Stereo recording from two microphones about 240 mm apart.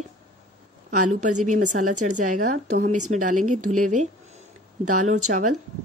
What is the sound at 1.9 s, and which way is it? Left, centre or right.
Speech, right.